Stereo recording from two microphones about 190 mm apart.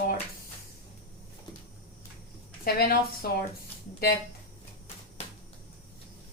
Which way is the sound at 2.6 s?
50° left (ahead or behind).